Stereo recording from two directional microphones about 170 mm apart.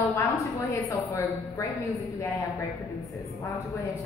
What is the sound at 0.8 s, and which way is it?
Speech, 20° left (ahead or behind).